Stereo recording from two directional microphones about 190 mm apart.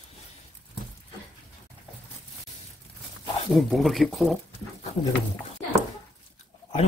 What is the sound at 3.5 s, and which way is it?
Speech, centre (ahead or behind).